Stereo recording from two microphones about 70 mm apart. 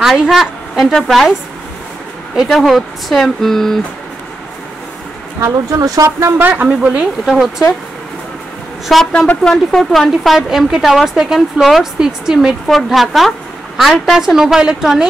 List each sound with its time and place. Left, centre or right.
0.0 s a woman's voice: centre
2.4 s speech: centre
5.7 s speech: right
6.0 s speech: right
6.4 s speech: right
7.2 s speech: centre
8.9 s speech: centre